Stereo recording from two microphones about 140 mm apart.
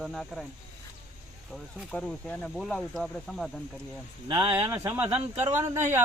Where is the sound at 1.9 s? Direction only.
5° left (ahead or behind).